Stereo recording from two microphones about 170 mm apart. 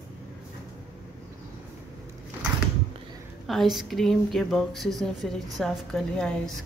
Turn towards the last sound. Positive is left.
turn(degrees=5)  # may be behind; listen again after turning